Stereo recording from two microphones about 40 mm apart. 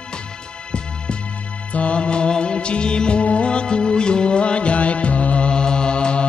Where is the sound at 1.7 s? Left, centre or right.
Left.